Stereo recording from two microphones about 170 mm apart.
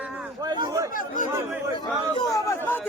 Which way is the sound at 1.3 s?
15° right (ahead or behind).